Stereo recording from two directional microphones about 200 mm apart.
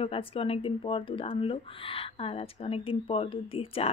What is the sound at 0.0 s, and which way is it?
Speech, 25° left (ahead or behind).